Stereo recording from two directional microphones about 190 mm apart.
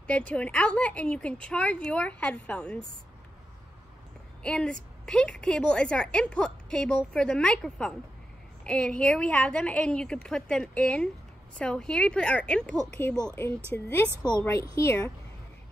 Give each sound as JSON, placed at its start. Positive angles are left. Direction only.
{"t": 0.3, "sound": "a woman's voice", "side_deg": 5}
{"t": 4.4, "sound": "a woman's voice", "side_deg": 5}
{"t": 14.0, "sound": "a woman's voice", "side_deg": -15}
{"t": 14.4, "sound": "a woman's voice", "side_deg": 15}